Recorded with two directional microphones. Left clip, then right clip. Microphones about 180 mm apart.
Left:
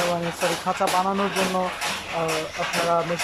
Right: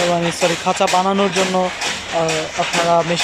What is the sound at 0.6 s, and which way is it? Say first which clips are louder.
Speech: right 6 dB; 20° right (ahead or behind).